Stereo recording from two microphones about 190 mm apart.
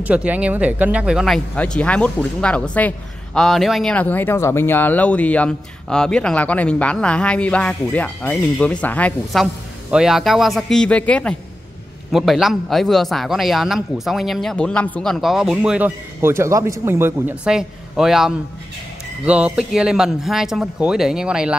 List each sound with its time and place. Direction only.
0.0 s a man's voice: 5° right (ahead or behind)